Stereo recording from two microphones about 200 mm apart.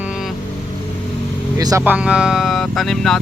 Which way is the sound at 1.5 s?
15° right (ahead or behind).